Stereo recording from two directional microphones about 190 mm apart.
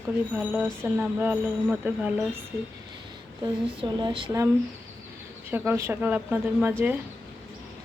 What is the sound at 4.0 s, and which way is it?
Speech, 25° right (ahead or behind).